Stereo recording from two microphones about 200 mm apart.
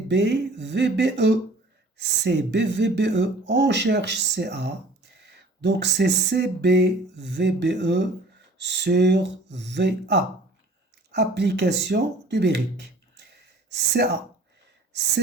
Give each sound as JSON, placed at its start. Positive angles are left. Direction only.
{"t": 0.1, "sound": "speech", "side_deg": -60}